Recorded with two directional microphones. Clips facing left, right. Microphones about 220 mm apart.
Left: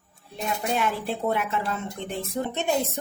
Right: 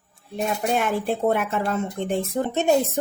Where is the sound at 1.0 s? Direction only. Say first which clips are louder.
Right 5 dB; 45° right (ahead or behind).